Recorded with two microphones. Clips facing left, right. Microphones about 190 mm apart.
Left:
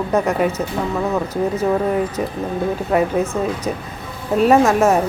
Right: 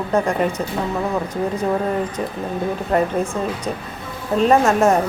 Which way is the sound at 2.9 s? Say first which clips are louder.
Left 1 dB; 5° left (ahead or behind).